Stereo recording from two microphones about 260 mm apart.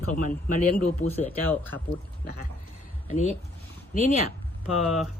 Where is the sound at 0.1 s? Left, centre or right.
Left.